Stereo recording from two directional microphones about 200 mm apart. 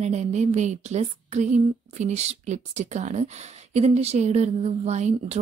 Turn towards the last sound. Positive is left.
turn(degrees=-35)  # may be behind; listen again after turning